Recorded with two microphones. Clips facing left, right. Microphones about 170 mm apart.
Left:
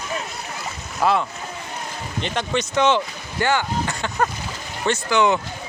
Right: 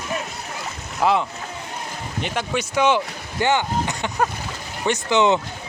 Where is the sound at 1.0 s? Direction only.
15° right (ahead or behind).